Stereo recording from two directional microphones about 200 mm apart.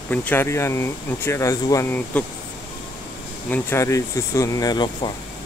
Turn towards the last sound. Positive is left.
turn(degrees=20)  # may be behind; listen again after turning